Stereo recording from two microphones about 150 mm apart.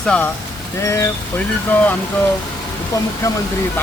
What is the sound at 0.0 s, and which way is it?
Speech, 5° left (ahead or behind).